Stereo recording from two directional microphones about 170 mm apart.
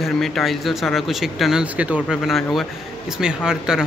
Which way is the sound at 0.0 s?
Centre (ahead or behind).